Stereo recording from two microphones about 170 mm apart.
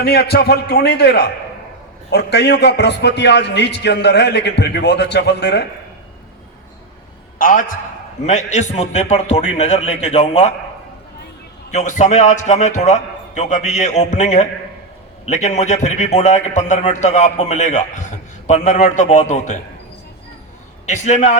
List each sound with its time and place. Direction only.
0.0 s a man's voice: 70° left (ahead or behind)
2.0 s a man's voice: 80° left
7.3 s a man's voice: 50° left (ahead or behind)
8.3 s a man's voice: 40° left (ahead or behind)
11.7 s a man's voice: 45° left (ahead or behind)
20.8 s a man's voice: 45° left (ahead or behind)